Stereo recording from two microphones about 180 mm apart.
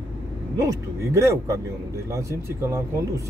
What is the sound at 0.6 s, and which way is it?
Speech, 15° right (ahead or behind).